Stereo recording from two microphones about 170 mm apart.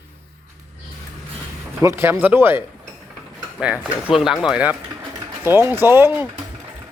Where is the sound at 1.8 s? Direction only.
15° right (ahead or behind).